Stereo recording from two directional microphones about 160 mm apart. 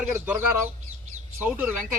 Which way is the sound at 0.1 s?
10° right (ahead or behind).